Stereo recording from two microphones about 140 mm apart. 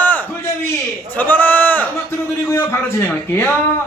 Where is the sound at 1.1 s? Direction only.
10° left (ahead or behind).